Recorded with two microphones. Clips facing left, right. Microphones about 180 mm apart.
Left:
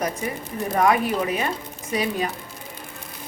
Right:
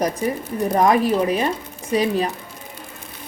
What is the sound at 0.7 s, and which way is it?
Speech, 35° right (ahead or behind).